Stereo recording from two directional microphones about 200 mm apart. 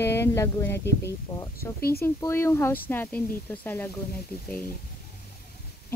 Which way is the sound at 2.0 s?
10° left (ahead or behind).